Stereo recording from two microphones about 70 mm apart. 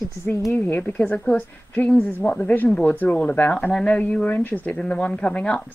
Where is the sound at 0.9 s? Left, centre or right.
Centre.